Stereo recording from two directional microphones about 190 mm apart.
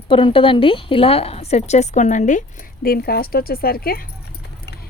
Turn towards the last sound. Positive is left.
turn(degrees=50)  # may be behind; listen again after turning